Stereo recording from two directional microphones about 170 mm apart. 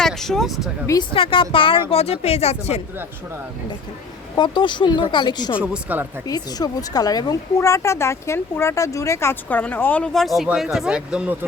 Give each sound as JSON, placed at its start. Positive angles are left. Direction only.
{"t": 0.0, "sound": "speech", "side_deg": 0}
{"t": 1.1, "sound": "speech", "side_deg": 30}
{"t": 4.4, "sound": "speech", "side_deg": 25}
{"t": 5.5, "sound": "speech", "side_deg": -10}
{"t": 6.2, "sound": "a woman's voice", "side_deg": 20}